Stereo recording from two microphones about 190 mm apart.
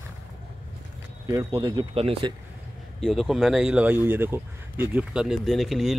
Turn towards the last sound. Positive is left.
turn(degrees=0)  # may be behind; listen again after turning